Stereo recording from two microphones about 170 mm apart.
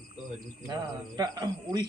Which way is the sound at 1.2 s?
25° right (ahead or behind).